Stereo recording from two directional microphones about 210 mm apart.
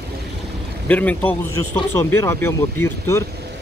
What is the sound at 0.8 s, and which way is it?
Speech, 5° left (ahead or behind).